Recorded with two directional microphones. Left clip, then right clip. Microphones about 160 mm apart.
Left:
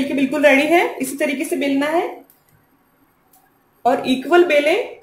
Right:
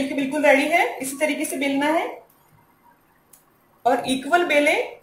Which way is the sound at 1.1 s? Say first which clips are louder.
Left 3 dB; 50° left (ahead or behind).